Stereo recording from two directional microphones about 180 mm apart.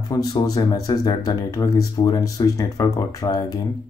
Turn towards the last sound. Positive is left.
turn(degrees=20)  # may be behind; listen again after turning